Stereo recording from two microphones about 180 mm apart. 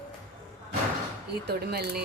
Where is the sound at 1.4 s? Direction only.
60° right (ahead or behind).